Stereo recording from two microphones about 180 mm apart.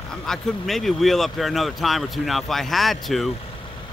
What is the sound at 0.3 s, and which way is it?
Speech, centre (ahead or behind).